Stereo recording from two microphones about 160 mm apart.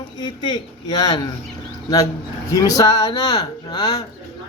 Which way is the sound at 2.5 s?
20° left (ahead or behind).